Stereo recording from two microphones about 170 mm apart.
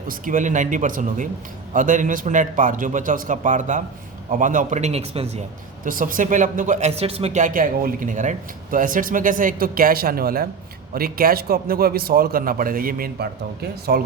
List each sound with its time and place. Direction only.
0.1 s speech: 50° right (ahead or behind)
5.8 s a man's voice: 50° right (ahead or behind)